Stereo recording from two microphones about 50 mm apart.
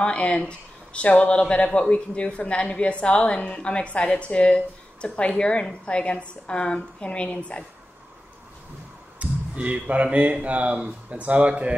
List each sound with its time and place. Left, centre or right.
0.0 s a woman's voice: left
9.2 s speech: right